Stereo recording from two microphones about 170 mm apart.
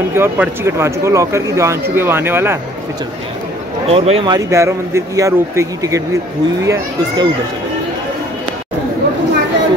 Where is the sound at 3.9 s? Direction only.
35° right (ahead or behind).